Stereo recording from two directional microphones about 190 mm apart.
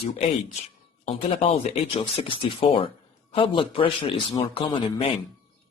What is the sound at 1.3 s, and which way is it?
A man's voice, 35° left (ahead or behind).